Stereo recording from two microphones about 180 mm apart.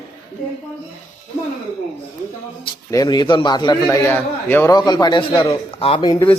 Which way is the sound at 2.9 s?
20° left (ahead or behind).